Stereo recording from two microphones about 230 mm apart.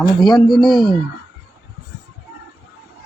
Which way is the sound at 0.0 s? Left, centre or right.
Centre.